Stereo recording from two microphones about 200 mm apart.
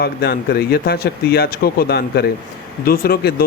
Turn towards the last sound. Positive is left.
turn(degrees=50)  # may be behind; listen again after turning